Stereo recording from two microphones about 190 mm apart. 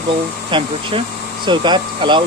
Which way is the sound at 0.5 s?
25° right (ahead or behind).